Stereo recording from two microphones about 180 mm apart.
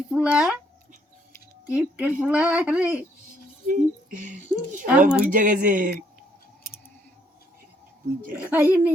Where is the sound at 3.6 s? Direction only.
50° right (ahead or behind).